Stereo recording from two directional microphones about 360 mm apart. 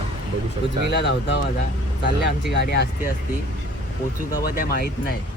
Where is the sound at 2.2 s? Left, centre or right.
Left.